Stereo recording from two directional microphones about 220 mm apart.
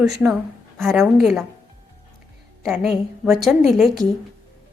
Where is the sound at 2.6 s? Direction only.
Centre (ahead or behind).